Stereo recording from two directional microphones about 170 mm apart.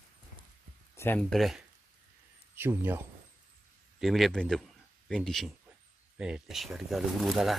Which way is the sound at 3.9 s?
Centre (ahead or behind).